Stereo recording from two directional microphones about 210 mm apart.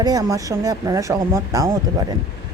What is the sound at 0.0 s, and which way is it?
Speech, 15° right (ahead or behind).